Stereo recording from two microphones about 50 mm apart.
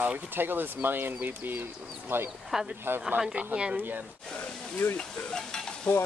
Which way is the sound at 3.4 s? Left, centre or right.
Right.